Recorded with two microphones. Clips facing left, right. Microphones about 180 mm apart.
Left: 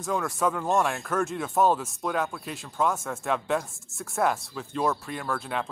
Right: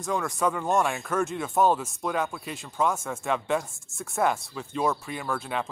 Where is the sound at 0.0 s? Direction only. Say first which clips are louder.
Even; centre (ahead or behind).